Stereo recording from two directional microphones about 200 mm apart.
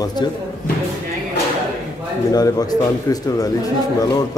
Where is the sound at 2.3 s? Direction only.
20° left (ahead or behind).